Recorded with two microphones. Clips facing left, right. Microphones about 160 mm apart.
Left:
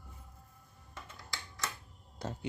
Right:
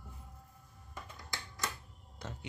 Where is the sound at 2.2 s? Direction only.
35° left (ahead or behind).